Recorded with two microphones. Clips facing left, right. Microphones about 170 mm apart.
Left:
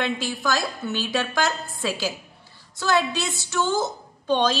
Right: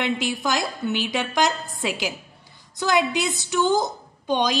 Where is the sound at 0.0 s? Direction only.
20° right (ahead or behind).